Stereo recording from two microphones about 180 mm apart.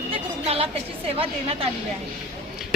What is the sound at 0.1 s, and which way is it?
A woman's voice, 35° right (ahead or behind).